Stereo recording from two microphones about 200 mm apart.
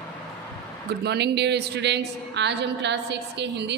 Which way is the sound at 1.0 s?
55° right (ahead or behind).